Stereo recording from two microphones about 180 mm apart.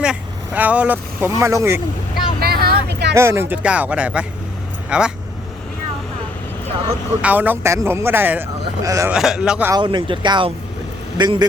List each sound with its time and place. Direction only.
0.0 s speech: 5° right (ahead or behind)
2.4 s a sound: 60° right (ahead or behind)
3.2 s a man's voice: 15° right (ahead or behind)
7.2 s speech: 10° right (ahead or behind)
9.1 s a man's voice: 5° right (ahead or behind)
9.7 s speech: 25° right (ahead or behind)